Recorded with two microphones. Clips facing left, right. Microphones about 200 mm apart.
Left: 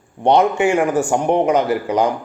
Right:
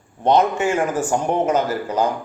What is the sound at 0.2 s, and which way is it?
Speech, 15° left (ahead or behind).